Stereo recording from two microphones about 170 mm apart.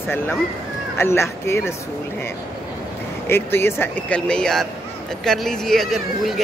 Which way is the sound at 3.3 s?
15° left (ahead or behind).